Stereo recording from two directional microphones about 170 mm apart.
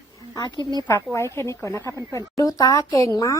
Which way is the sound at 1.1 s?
15° left (ahead or behind).